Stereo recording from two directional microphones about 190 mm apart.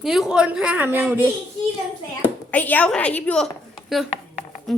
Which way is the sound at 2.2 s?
10° left (ahead or behind).